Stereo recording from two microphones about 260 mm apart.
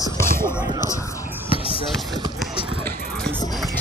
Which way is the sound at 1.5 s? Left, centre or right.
Left.